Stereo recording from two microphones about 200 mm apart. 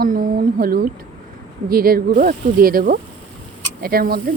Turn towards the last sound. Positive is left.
turn(degrees=-45)  # may be behind; listen again after turning